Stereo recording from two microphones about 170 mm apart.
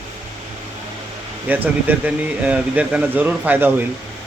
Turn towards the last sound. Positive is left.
turn(degrees=-10)  # may be behind; listen again after turning